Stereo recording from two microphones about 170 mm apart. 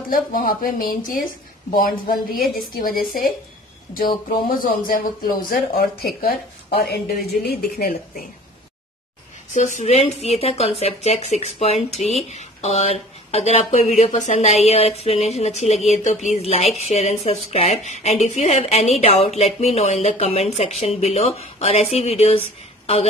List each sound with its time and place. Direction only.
0.1 s speech: 55° left (ahead or behind)
4.6 s speech: 55° left (ahead or behind)
9.5 s speech: 45° left (ahead or behind)